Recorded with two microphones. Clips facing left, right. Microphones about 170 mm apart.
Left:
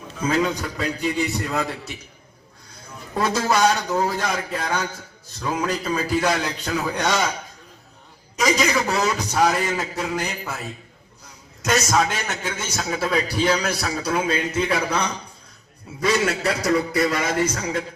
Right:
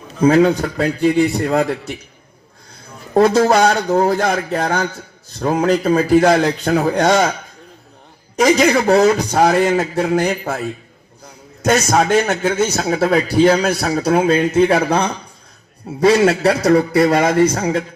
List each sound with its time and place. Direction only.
0.3 s a man's voice: 60° right (ahead or behind)
3.2 s a man's voice: 45° right (ahead or behind)
8.4 s a man's voice: 50° right (ahead or behind)
11.6 s a man's voice: 50° right (ahead or behind)
16.1 s a man's voice: 30° right (ahead or behind)
16.5 s a man's voice: 60° right (ahead or behind)